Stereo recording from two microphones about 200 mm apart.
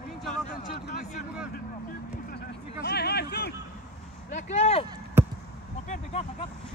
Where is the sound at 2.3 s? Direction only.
55° left (ahead or behind).